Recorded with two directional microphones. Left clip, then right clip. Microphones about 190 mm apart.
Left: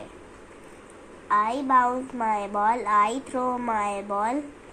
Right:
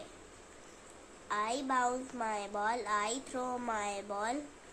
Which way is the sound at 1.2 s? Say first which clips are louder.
Left 12 dB; 5° right (ahead or behind).